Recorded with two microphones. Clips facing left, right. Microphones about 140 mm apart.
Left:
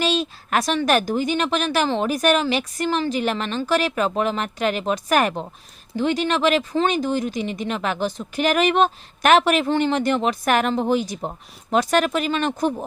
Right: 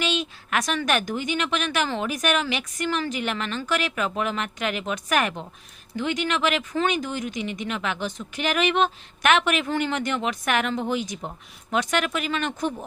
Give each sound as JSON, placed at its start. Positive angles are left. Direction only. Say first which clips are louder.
{"t": 0.0, "sound": "speech", "louder": "left 5 dB", "side_deg": 35}